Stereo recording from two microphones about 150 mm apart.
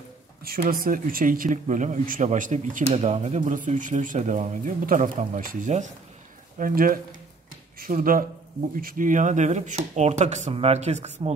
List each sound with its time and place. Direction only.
0.4 s speech: 80° right; by 2.8 s 60° right (ahead or behind)
2.9 s speech: 45° right (ahead or behind)
6.6 s speech: 70° right (ahead or behind); by 11.3 s 50° right (ahead or behind)